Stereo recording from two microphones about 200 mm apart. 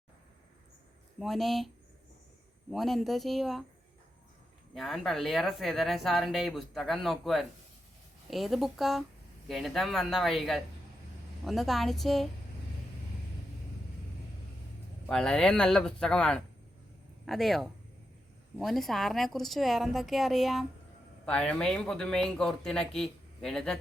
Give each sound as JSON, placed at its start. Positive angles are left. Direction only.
{"t": 1.2, "sound": "speech", "side_deg": 0}
{"t": 4.7, "sound": "speech", "side_deg": 0}
{"t": 15.0, "sound": "speech", "side_deg": 5}